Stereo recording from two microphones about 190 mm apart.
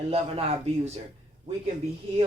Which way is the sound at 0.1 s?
35° right (ahead or behind).